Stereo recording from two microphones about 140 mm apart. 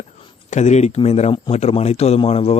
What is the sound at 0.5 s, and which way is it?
Speech, 55° left (ahead or behind).